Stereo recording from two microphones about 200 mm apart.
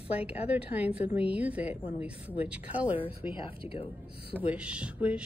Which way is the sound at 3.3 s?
25° left (ahead or behind).